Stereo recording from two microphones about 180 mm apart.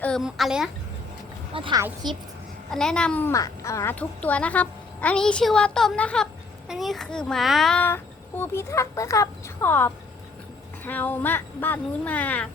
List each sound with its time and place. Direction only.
0.0 s speech: centre (ahead or behind)
1.5 s a woman's voice: 30° right (ahead or behind)
2.6 s speech: 5° left (ahead or behind)